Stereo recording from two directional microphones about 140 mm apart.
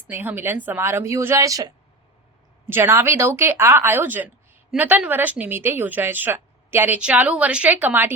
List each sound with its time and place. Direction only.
0.1 s speech: 15° right (ahead or behind)